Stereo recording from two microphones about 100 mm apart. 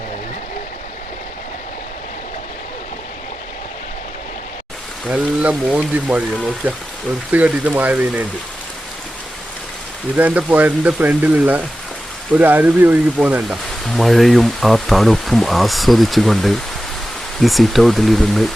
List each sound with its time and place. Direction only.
5.0 s speech: 15° right (ahead or behind)
10.2 s speech: 15° right (ahead or behind)
13.8 s speech: centre (ahead or behind)